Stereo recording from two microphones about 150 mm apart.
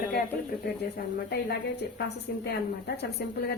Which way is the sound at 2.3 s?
90° left.